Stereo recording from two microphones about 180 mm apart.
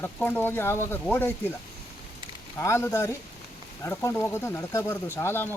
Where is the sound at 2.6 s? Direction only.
15° left (ahead or behind).